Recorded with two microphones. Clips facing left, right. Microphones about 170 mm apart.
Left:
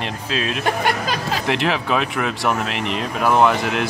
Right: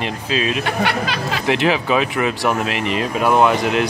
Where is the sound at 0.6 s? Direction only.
45° left (ahead or behind).